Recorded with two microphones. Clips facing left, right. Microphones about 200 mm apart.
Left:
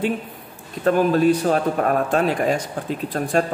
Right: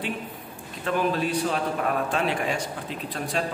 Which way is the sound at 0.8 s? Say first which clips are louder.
Left 9 dB; 45° left (ahead or behind).